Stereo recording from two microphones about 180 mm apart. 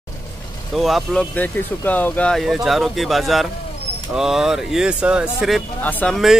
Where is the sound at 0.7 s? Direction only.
Centre (ahead or behind).